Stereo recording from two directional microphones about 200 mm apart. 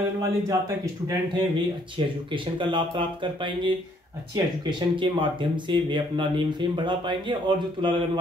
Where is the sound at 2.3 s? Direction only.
25° right (ahead or behind).